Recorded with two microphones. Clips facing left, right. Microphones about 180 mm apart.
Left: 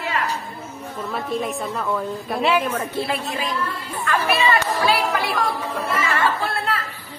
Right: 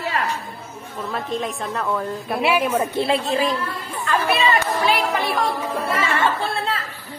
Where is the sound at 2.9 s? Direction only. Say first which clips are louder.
Right 5 dB; 25° right (ahead or behind).